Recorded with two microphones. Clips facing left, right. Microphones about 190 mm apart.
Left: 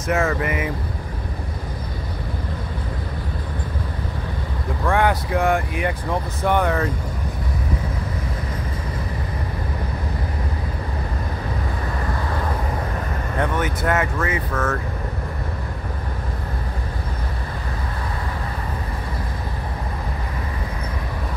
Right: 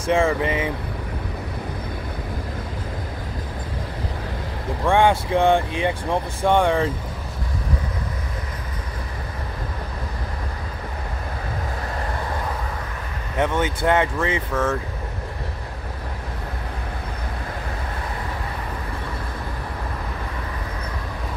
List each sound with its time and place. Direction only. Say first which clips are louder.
0.0 s speech: right 2 dB; 30° right (ahead or behind)
4.9 s speech: right 3 dB; 25° right (ahead or behind)
13.4 s speech: right 2 dB; 25° right (ahead or behind)
14.5 s speech: right 1 dB; 10° right (ahead or behind)